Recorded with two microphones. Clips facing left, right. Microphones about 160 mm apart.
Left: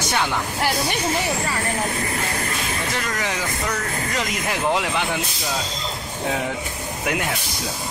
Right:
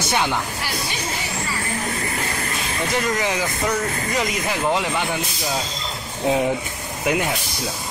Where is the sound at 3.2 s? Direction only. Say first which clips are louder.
Right 3 dB; 15° right (ahead or behind).